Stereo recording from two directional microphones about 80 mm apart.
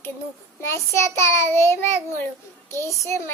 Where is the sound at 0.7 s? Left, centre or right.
Left.